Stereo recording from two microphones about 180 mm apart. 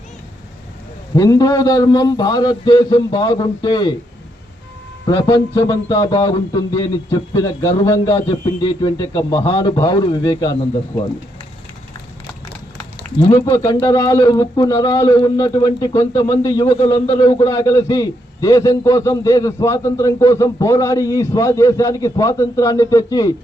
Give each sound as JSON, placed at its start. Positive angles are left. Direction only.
{"t": 1.1, "sound": "speech", "side_deg": 20}
{"t": 5.0, "sound": "speech", "side_deg": 25}
{"t": 13.3, "sound": "speech", "side_deg": 15}